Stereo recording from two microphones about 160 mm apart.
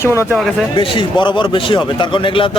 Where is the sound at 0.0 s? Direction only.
15° left (ahead or behind).